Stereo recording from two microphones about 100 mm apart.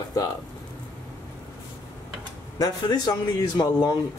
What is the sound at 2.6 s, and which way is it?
Speech, 45° left (ahead or behind).